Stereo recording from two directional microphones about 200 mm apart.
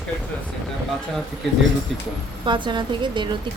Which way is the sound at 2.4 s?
25° right (ahead or behind).